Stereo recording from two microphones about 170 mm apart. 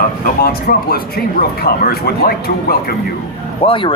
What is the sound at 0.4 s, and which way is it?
A man's voice, 60° left (ahead or behind).